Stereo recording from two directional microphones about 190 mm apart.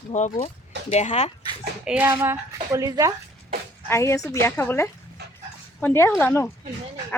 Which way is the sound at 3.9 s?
15° left (ahead or behind).